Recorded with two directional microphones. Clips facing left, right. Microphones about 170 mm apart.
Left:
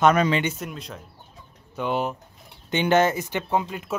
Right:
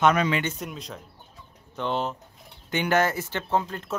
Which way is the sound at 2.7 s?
20° left (ahead or behind).